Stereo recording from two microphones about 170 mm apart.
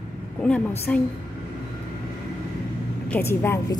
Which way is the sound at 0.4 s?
10° left (ahead or behind).